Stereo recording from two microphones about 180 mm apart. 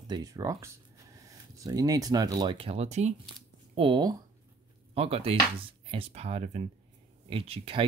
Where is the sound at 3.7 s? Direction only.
25° right (ahead or behind).